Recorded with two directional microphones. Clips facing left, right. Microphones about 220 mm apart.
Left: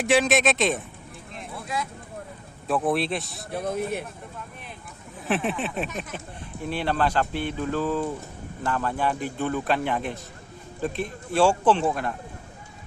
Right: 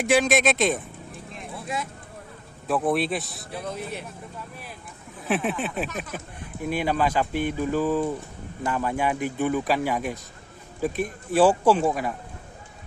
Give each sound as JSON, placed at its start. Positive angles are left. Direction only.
{"t": 0.0, "sound": "speech", "side_deg": 0}
{"t": 1.6, "sound": "speech", "side_deg": -25}
{"t": 2.6, "sound": "speech", "side_deg": 0}
{"t": 3.5, "sound": "speech", "side_deg": 50}
{"t": 5.3, "sound": "speech", "side_deg": 0}